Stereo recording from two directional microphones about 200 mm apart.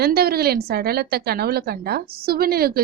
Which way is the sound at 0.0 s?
50° right (ahead or behind).